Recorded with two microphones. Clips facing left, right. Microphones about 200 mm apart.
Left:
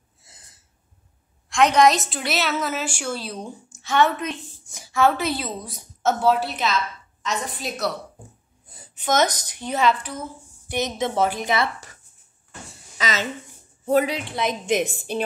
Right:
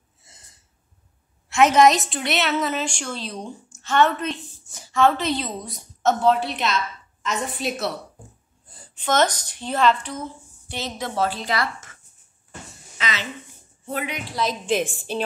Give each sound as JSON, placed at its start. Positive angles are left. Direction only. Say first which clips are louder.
{"t": 0.2, "sound": "gasp", "louder": "even", "side_deg": 0}
{"t": 1.5, "sound": "a woman's voice", "louder": "right 1 dB", "side_deg": -5}
{"t": 8.7, "sound": "a woman's voice", "louder": "even", "side_deg": 10}
{"t": 13.0, "sound": "a sound", "louder": "left 4 dB", "side_deg": 45}
{"t": 13.8, "sound": "a woman's voice", "louder": "left 9 dB", "side_deg": 40}